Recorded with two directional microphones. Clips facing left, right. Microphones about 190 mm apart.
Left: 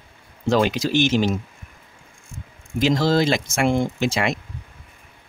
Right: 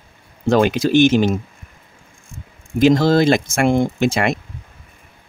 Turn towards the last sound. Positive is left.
turn(degrees=-50)  # may be behind; listen again after turning